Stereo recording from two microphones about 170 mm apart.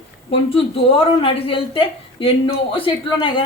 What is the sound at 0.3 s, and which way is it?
A woman's voice, 35° left (ahead or behind).